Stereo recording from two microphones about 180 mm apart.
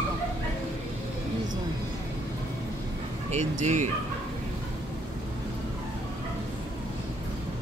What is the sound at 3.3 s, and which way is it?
Speech, 40° right (ahead or behind).